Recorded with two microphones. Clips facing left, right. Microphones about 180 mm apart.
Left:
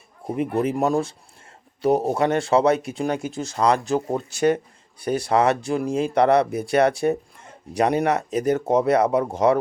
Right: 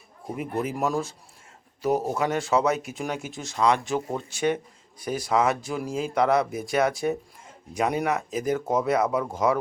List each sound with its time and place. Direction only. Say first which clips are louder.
0.3 s speech: left 6 dB; 30° left (ahead or behind)
4.9 s speech: left 4 dB; 65° left (ahead or behind)
8.6 s speech: left 5 dB; 30° left (ahead or behind)